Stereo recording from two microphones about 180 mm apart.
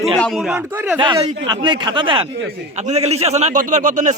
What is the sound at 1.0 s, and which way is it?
A man's voice, 25° right (ahead or behind).